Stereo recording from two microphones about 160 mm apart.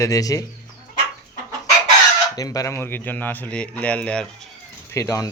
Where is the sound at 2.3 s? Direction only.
20° left (ahead or behind); by 4.3 s 5° left (ahead or behind).